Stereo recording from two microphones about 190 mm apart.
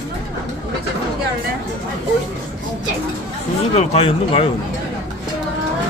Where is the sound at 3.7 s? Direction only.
30° left (ahead or behind).